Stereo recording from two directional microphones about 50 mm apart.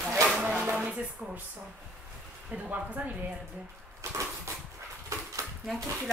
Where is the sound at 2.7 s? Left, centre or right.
Right.